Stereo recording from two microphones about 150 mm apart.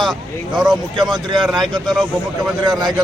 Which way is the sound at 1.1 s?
30° right (ahead or behind).